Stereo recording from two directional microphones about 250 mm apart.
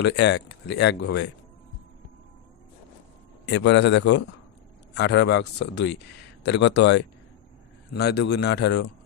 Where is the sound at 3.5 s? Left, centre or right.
Left.